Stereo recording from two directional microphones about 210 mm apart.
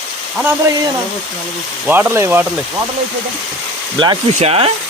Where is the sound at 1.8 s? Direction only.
10° right (ahead or behind).